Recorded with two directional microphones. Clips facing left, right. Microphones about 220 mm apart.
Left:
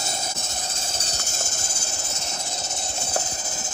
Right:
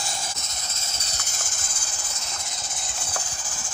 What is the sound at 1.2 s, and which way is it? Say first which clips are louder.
Hiss: left 5 dB; 25° left (ahead or behind).